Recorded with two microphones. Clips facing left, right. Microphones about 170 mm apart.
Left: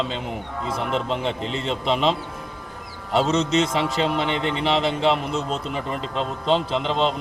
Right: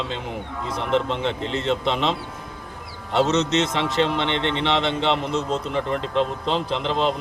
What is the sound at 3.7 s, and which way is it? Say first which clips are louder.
Speech: even; 5° left (ahead or behind).